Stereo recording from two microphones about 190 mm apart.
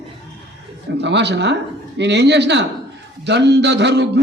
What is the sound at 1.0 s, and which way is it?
Music, 65° right (ahead or behind).